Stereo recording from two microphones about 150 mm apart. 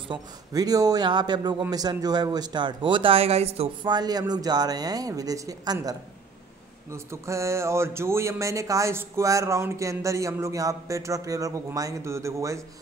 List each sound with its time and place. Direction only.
0.1 s speech: 25° right (ahead or behind); by 3.7 s 45° right (ahead or behind)
3.8 s speech: 30° right (ahead or behind)